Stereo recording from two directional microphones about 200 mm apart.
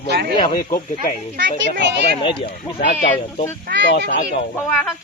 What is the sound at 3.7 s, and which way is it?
Speech, 50° right (ahead or behind).